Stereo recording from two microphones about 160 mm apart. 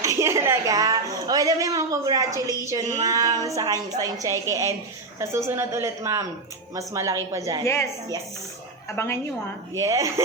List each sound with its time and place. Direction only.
0.0 s a woman's voice: 20° right (ahead or behind)
7.6 s a woman's voice: 15° left (ahead or behind)
9.0 s a woman's voice: 15° left (ahead or behind)
9.8 s a woman's voice: 20° right (ahead or behind)